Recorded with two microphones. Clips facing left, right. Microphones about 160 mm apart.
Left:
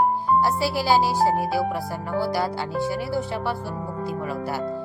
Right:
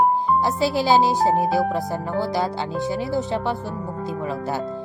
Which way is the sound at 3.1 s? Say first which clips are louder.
Right 3 dB; 20° right (ahead or behind).